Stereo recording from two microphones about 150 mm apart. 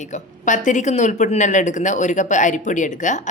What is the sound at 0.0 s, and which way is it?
Speech, 55° left (ahead or behind).